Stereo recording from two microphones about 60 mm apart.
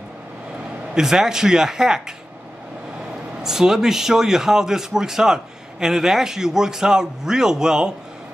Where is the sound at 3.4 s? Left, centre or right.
Centre.